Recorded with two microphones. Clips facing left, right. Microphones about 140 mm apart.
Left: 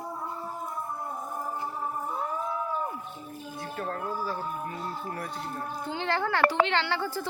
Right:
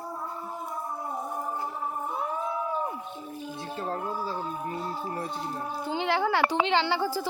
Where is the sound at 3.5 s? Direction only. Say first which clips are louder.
Right 1 dB; 25° right (ahead or behind).